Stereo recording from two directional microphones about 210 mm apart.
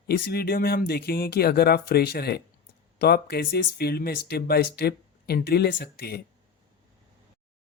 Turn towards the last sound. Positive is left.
turn(degrees=50)  # may be behind; listen again after turning